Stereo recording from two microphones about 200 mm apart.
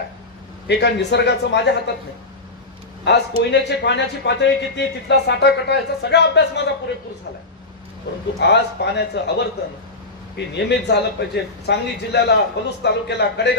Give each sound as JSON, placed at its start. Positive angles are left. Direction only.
{"t": 0.7, "sound": "a man's voice", "side_deg": 60}
{"t": 3.1, "sound": "a man's voice", "side_deg": 60}
{"t": 8.4, "sound": "a man's voice", "side_deg": 60}